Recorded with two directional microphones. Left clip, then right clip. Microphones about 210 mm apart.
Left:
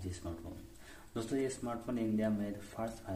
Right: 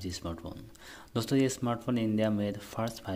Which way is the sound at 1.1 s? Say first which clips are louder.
Right 7 dB; 50° right (ahead or behind).